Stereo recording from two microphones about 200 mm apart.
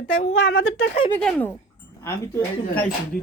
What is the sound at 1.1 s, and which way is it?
Speech, 10° left (ahead or behind).